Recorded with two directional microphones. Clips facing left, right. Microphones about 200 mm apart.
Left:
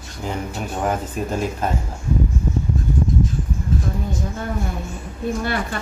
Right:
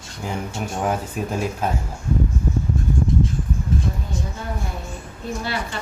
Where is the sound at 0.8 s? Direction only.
5° right (ahead or behind).